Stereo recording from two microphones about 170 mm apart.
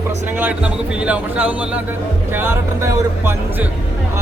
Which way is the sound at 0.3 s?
10° right (ahead or behind).